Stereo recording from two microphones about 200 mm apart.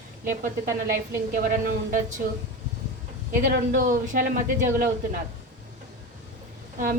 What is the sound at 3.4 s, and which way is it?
A woman's voice, 40° right (ahead or behind).